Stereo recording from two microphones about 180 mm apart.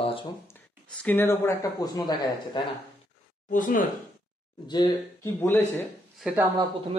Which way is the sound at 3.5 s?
45° left (ahead or behind).